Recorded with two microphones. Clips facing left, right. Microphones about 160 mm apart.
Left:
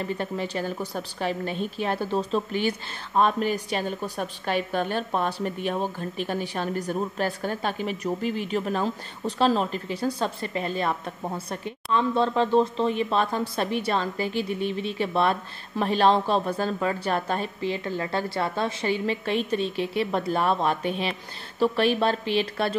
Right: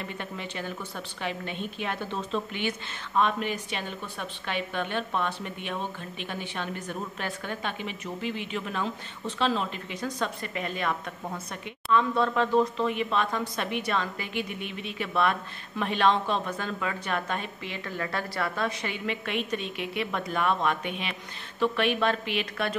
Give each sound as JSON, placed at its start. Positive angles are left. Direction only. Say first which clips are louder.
{"t": 0.0, "sound": "a woman's voice", "louder": "left 7 dB", "side_deg": 35}